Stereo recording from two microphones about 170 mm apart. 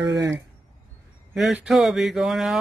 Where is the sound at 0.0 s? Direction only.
20° right (ahead or behind).